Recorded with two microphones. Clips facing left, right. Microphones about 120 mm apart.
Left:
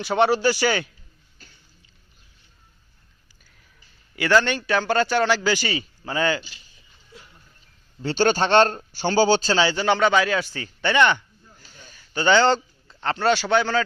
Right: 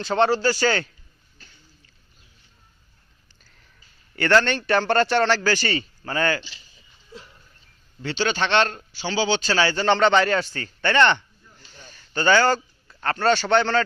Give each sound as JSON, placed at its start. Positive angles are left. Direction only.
{"t": 0.0, "sound": "a man's voice", "side_deg": 10}
{"t": 4.1, "sound": "a man's voice", "side_deg": 10}
{"t": 8.0, "sound": "a man's voice", "side_deg": 45}
{"t": 9.5, "sound": "a man's voice", "side_deg": 15}